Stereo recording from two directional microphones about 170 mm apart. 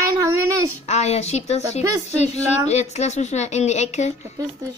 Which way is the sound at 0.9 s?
40° left (ahead or behind).